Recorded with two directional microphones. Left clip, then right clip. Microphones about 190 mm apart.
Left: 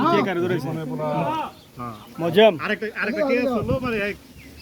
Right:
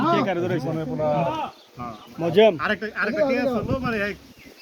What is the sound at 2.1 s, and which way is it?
Speech, centre (ahead or behind).